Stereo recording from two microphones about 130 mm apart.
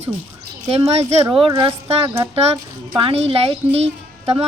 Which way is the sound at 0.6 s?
50° right (ahead or behind).